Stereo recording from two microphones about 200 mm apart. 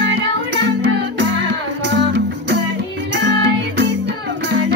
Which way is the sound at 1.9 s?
60° right (ahead or behind).